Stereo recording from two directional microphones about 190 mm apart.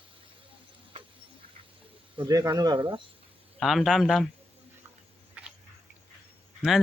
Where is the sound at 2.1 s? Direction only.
20° right (ahead or behind).